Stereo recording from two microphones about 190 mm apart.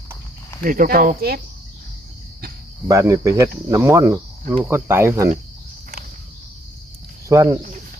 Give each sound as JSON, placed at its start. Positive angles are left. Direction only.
{"t": 0.6, "sound": "speech", "side_deg": -45}
{"t": 2.8, "sound": "speech", "side_deg": -15}
{"t": 7.3, "sound": "speech", "side_deg": -15}